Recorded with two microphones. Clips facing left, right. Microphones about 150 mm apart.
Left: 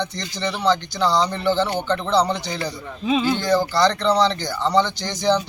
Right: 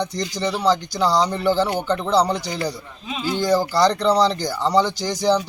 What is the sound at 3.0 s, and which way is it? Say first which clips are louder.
Speech: left 6 dB; 70° left (ahead or behind).